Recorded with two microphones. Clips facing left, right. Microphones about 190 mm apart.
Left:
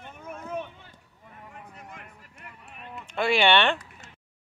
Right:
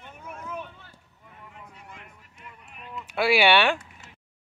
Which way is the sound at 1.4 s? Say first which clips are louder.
Left 2 dB; 50° left (ahead or behind).